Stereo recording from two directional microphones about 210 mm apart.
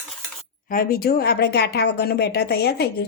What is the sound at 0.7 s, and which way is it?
Speech, 45° left (ahead or behind).